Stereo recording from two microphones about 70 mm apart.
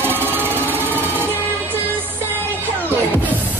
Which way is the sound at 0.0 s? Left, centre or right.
Right.